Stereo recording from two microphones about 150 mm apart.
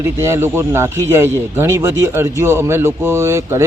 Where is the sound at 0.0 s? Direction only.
15° right (ahead or behind).